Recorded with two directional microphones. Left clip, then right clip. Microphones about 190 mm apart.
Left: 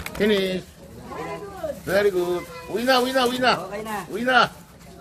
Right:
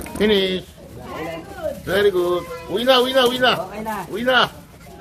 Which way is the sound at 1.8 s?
5° left (ahead or behind).